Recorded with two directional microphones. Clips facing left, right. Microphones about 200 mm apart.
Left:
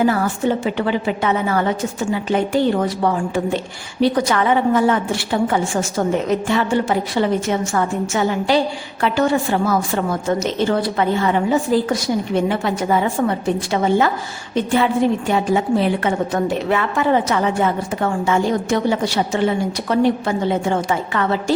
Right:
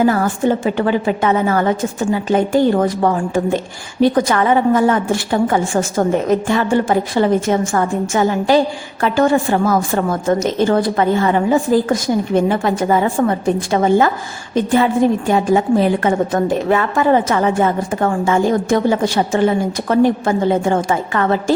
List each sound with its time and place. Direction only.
0.1 s a woman's voice: 50° right (ahead or behind)